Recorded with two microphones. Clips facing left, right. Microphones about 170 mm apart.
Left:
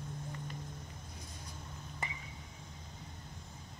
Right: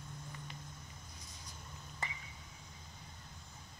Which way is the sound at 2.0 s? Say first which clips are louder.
Left 1 dB; 20° left (ahead or behind).